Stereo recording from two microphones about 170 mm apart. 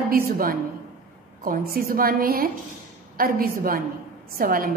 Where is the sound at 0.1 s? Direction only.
60° right (ahead or behind).